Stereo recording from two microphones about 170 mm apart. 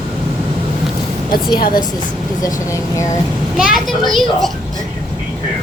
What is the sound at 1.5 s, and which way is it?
Speech, 60° left (ahead or behind).